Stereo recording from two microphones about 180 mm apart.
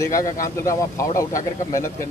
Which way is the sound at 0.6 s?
15° left (ahead or behind).